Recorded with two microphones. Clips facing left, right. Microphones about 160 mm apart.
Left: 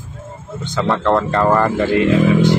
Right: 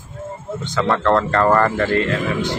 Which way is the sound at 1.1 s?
20° left (ahead or behind).